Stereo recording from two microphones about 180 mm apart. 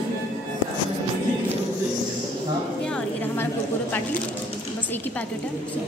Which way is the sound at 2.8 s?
10° left (ahead or behind).